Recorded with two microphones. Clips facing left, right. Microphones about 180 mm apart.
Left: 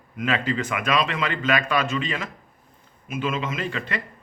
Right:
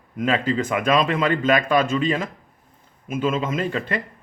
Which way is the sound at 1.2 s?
50° right (ahead or behind).